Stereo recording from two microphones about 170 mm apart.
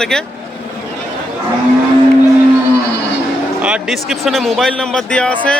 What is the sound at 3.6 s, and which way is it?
A man's voice, 5° right (ahead or behind).